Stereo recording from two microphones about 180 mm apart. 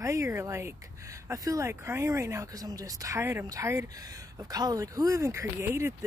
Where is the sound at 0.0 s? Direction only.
15° right (ahead or behind).